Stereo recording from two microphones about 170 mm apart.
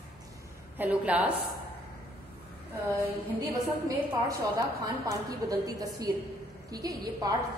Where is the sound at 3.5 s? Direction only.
20° right (ahead or behind).